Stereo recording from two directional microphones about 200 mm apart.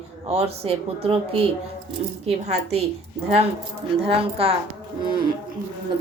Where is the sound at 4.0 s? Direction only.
30° right (ahead or behind).